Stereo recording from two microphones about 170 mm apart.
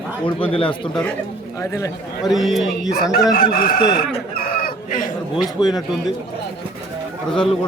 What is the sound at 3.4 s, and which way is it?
Chicken, 60° left (ahead or behind).